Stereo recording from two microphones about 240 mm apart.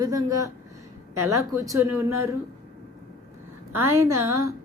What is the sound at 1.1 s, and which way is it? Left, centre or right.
Speech, right.